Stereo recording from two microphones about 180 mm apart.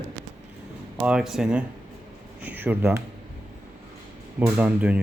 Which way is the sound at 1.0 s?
5° right (ahead or behind).